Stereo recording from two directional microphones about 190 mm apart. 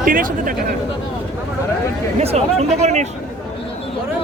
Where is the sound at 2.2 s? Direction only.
35° right (ahead or behind).